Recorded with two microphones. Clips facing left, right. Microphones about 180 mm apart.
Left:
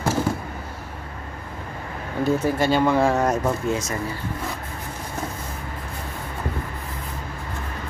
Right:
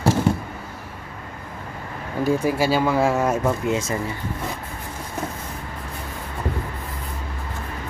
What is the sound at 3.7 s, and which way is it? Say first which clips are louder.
Speech: right 2 dB; 25° right (ahead or behind).